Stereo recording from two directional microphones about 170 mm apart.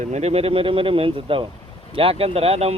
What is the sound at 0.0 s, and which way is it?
Speech, 40° right (ahead or behind).